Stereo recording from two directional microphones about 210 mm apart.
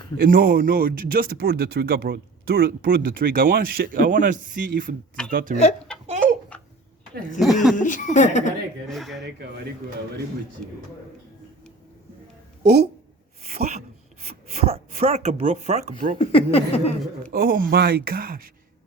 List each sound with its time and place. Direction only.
0.2 s speech: 45° right (ahead or behind)
5.9 s a sound: 5° left (ahead or behind)
6.5 s babbling: 5° left (ahead or behind)
7.3 s speech: centre (ahead or behind)
7.8 s a woman's voice: 35° left (ahead or behind)
8.9 s speech: centre (ahead or behind)
12.6 s speech: 50° right (ahead or behind)
13.4 s a sound: 30° right (ahead or behind)
14.3 s speech: 30° right (ahead or behind)
16.1 s speech: 25° left (ahead or behind)
17.3 s speech: 45° right (ahead or behind)